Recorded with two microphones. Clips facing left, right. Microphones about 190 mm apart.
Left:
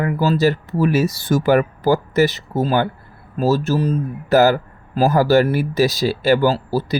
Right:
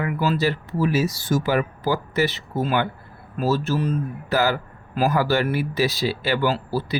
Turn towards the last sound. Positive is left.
turn(degrees=40)  # may be behind; listen again after turning